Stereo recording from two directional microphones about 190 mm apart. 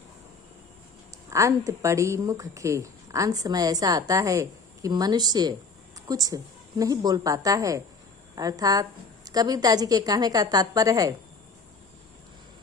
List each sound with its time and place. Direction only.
1.3 s a woman's voice: 15° right (ahead or behind)